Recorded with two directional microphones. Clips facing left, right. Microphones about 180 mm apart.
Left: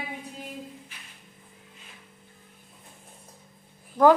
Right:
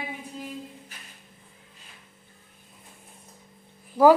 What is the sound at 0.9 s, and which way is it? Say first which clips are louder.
Music: right 2 dB; 40° right (ahead or behind).